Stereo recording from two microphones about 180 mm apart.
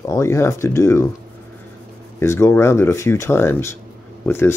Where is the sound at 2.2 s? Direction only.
15° left (ahead or behind).